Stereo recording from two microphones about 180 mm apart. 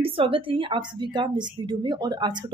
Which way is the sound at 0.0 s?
30° right (ahead or behind).